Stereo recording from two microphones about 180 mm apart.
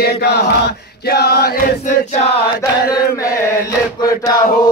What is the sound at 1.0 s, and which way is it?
Chant, 60° left (ahead or behind).